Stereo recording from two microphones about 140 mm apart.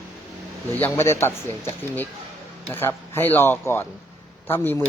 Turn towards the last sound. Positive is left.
turn(degrees=15)  # may be behind; listen again after turning